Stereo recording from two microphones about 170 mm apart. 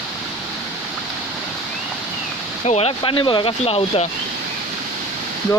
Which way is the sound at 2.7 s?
35° left (ahead or behind).